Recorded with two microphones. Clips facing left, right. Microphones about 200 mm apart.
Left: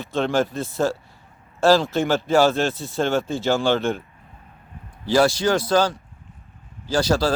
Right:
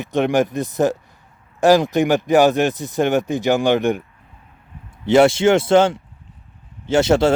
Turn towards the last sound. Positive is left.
turn(degrees=-25)  # may be behind; listen again after turning